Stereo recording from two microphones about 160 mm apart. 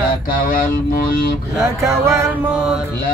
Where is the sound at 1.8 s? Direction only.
15° right (ahead or behind).